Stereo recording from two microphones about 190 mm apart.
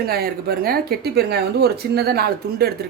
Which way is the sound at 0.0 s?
55° right (ahead or behind).